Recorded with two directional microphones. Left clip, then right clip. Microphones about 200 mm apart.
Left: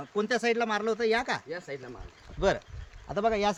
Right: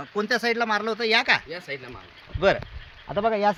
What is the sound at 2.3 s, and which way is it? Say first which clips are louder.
Speech: right 6 dB; 30° right (ahead or behind).